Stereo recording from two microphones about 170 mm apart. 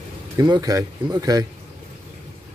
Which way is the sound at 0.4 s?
20° right (ahead or behind).